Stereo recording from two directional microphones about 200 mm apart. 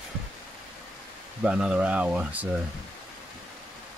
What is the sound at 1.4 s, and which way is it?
Speech, 5° right (ahead or behind).